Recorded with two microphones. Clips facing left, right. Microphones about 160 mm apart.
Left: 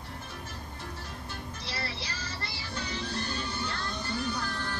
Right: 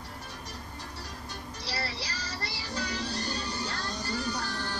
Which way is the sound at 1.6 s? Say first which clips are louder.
Right 3 dB; 35° right (ahead or behind).